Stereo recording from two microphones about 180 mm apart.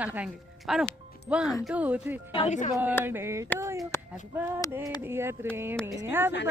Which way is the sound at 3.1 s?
15° right (ahead or behind).